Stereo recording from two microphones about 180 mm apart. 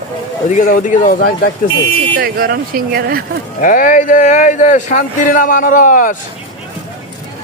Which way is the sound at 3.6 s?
50° left (ahead or behind).